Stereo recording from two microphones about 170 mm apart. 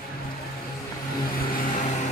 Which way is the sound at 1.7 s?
45° left (ahead or behind).